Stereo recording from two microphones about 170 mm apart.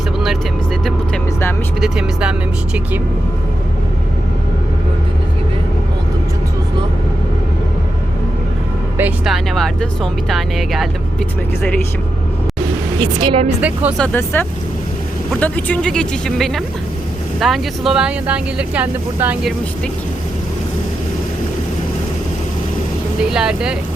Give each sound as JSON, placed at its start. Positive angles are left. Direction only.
{"t": 1.8, "sound": "music", "side_deg": -5}
{"t": 9.0, "sound": "speech", "side_deg": -5}
{"t": 13.0, "sound": "a woman's voice", "side_deg": -35}
{"t": 13.6, "sound": "speech", "side_deg": -10}
{"t": 14.0, "sound": "speech", "side_deg": 10}
{"t": 23.3, "sound": "speech", "side_deg": -5}